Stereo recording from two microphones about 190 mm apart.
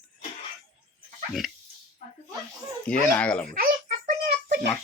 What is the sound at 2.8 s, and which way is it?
Speech, 5° left (ahead or behind).